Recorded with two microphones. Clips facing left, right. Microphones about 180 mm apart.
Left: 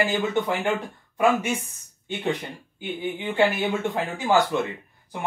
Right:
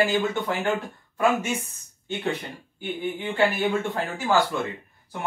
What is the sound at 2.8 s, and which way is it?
Speech, 20° left (ahead or behind).